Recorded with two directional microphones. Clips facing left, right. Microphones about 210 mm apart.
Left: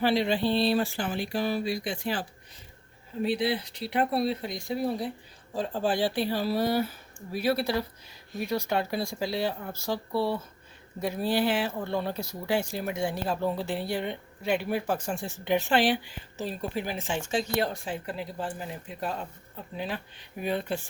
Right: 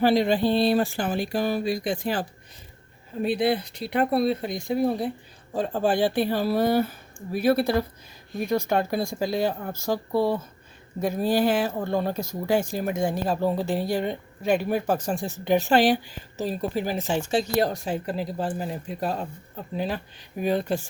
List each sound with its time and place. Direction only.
0.0 s speech: 45° right (ahead or behind)
3.2 s speech: 50° right (ahead or behind)